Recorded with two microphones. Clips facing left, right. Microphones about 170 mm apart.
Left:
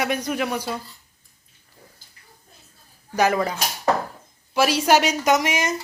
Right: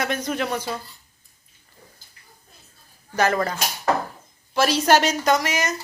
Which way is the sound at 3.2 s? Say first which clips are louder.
Left 1 dB; 10° left (ahead or behind).